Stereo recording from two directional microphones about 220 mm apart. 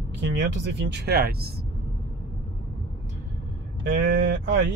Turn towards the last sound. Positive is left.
turn(degrees=-50)  # may be behind; listen again after turning